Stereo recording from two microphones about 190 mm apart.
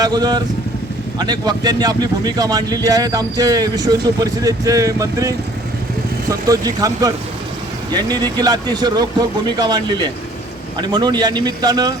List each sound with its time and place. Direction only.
0.0 s speech: 20° right (ahead or behind)
6.5 s speech: 20° right (ahead or behind)